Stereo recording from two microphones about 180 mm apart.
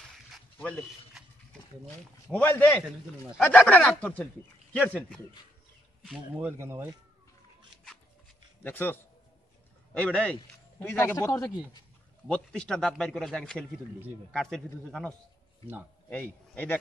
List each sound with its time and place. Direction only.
0.6 s speech: 5° left (ahead or behind)
2.3 s speech: 10° left (ahead or behind)
6.3 s speech: 10° right (ahead or behind)
8.6 s speech: 10° left (ahead or behind)
12.3 s a man's voice: 5° left (ahead or behind)